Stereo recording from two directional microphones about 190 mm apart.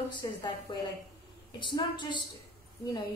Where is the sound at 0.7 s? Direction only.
25° left (ahead or behind).